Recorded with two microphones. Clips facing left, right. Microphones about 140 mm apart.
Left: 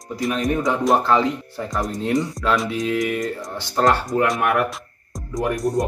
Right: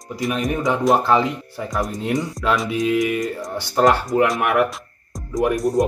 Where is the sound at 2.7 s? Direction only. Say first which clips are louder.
Right 3 dB; 20° right (ahead or behind).